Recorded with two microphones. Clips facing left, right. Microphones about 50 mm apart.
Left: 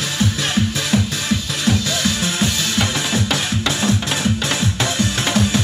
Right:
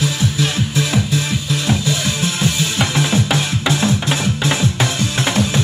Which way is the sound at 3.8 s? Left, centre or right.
Right.